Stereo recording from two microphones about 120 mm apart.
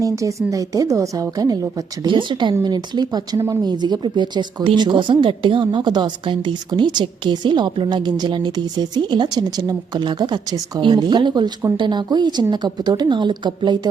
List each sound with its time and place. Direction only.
0.0 s a woman's voice: 25° right (ahead or behind)
2.0 s speech: 45° right (ahead or behind)